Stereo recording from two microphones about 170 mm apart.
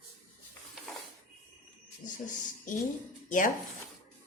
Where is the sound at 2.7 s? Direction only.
50° left (ahead or behind).